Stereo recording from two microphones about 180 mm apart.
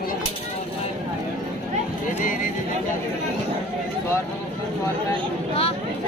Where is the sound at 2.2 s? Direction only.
50° left (ahead or behind).